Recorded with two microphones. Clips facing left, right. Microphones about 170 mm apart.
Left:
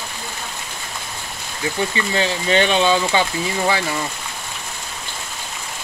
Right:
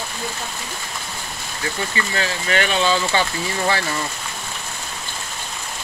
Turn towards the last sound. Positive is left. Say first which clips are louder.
# left 2 dB
turn(degrees=15)  # may be behind; listen again after turning